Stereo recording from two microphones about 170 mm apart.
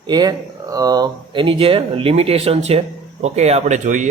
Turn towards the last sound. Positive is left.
turn(degrees=-45)  # may be behind; listen again after turning